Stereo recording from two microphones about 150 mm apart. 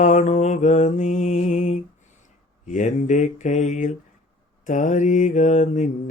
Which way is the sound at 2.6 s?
55° left (ahead or behind).